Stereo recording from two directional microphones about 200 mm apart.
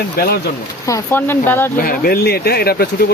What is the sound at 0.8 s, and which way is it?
Speech, 10° left (ahead or behind).